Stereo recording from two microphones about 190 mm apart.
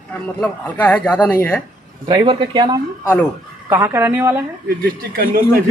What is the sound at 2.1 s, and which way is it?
Speech, 25° right (ahead or behind).